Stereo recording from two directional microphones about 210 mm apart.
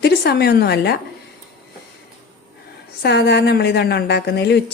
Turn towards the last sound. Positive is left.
turn(degrees=50)  # may be behind; listen again after turning